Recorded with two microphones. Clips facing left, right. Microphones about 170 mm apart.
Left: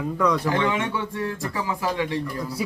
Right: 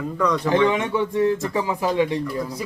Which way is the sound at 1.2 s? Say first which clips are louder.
Right 8 dB; 20° right (ahead or behind).